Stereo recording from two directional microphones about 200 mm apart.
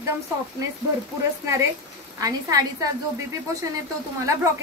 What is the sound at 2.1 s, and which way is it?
Speech, 15° right (ahead or behind).